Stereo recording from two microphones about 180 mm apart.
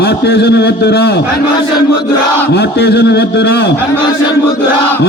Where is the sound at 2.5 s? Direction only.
65° left (ahead or behind).